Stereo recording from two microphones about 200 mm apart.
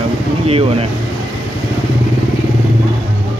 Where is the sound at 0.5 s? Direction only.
30° right (ahead or behind).